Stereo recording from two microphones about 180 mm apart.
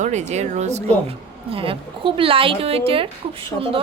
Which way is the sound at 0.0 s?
40° right (ahead or behind).